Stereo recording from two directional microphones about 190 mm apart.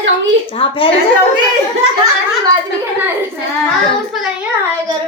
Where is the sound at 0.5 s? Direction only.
30° left (ahead or behind).